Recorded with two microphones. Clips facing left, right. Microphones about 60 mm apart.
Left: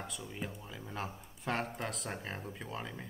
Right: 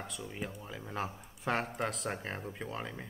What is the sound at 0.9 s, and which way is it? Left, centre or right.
Speech, centre.